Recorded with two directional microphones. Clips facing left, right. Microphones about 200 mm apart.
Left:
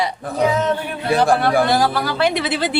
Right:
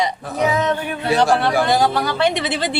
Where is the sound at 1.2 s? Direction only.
55° left (ahead or behind).